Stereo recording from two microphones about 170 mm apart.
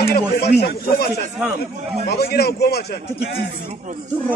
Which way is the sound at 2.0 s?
70° left (ahead or behind).